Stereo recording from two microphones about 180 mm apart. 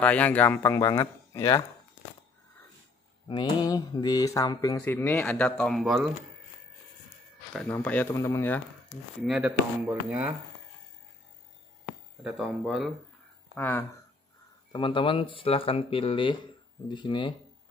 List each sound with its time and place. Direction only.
0.0 s speech: 10° left (ahead or behind)
3.3 s speech: 25° left (ahead or behind); by 6.0 s centre (ahead or behind)
7.5 s speech: 5° left (ahead or behind)
9.2 s speech: 5° right (ahead or behind)
12.2 s speech: 5° right (ahead or behind)
13.6 s speech: 10° left (ahead or behind)
14.7 s speech: 25° left (ahead or behind)